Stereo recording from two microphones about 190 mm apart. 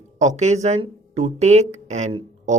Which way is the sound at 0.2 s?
40° right (ahead or behind).